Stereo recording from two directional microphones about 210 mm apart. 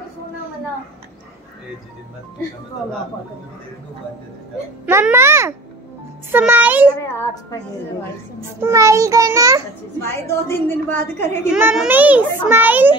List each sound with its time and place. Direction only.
4.8 s a child's voice: 10° right (ahead or behind)
8.4 s a child's voice: 15° right (ahead or behind)
10.0 s a woman's voice: 10° left (ahead or behind)
11.5 s a child's voice: 5° right (ahead or behind)